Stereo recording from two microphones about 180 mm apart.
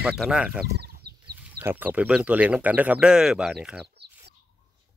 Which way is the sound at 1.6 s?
10° right (ahead or behind).